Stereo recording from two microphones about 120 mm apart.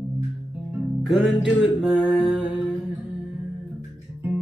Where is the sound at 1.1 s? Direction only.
5° right (ahead or behind).